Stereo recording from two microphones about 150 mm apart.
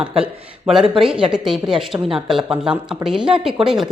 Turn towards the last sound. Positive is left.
turn(degrees=-5)  # may be behind; listen again after turning